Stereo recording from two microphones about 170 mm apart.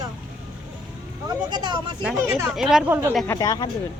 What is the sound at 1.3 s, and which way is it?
Speech, 25° right (ahead or behind).